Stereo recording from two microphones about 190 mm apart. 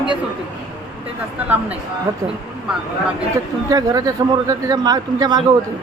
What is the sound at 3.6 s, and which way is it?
A man's voice, 20° right (ahead or behind).